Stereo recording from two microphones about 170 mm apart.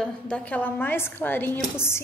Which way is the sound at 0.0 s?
10° left (ahead or behind).